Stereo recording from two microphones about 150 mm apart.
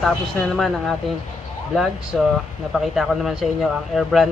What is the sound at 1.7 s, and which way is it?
Speech, 5° right (ahead or behind).